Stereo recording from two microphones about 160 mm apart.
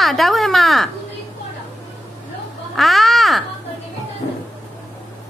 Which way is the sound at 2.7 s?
Centre (ahead or behind).